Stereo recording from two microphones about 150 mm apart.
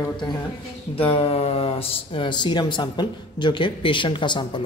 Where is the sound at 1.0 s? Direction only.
40° left (ahead or behind).